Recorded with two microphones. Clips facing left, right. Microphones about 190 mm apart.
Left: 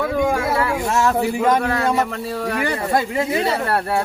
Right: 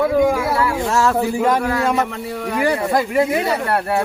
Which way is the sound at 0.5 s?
20° left (ahead or behind).